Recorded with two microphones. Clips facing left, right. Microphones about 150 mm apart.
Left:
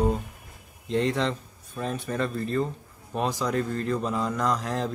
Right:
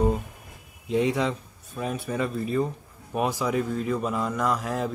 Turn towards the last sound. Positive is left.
turn(degrees=-5)  # may be behind; listen again after turning